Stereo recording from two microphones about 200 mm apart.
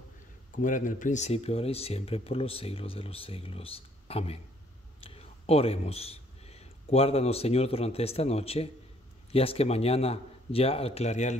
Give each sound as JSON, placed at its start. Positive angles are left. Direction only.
{"t": 0.6, "sound": "a man's voice", "side_deg": 40}